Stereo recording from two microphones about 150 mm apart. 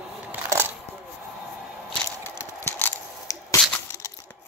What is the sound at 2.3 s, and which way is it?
Squish, 15° left (ahead or behind).